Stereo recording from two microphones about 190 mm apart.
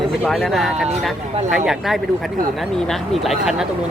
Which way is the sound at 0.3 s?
Centre (ahead or behind).